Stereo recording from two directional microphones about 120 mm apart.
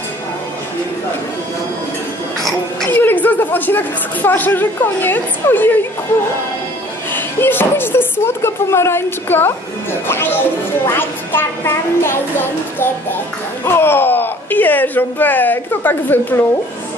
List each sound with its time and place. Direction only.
2.9 s speech: 15° left (ahead or behind)
7.1 s speech: 15° left (ahead or behind)